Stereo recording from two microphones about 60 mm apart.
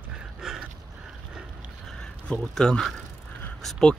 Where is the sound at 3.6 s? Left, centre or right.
Centre.